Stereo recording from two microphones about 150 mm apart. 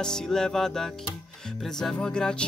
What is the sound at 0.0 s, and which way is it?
Music, 5° left (ahead or behind).